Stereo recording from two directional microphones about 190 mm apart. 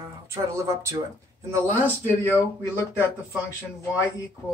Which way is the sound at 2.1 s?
10° left (ahead or behind).